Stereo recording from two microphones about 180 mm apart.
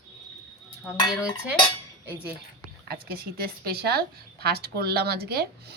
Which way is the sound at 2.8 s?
55° right (ahead or behind).